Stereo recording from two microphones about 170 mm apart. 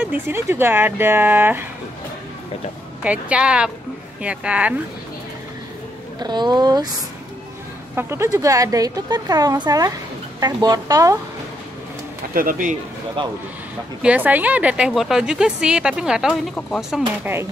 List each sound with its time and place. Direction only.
0.0 s speech: 10° right (ahead or behind)
3.0 s speech: 10° right (ahead or behind)
6.1 s speech: 25° right (ahead or behind)
7.9 s speech: 15° right (ahead or behind)
12.4 s speech: 55° right (ahead or behind)
13.2 s speech: 30° right (ahead or behind)
14.0 s a woman's voice: 10° right (ahead or behind)